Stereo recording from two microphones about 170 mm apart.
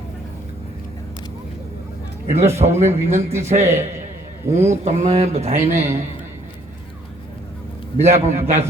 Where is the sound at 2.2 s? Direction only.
40° right (ahead or behind).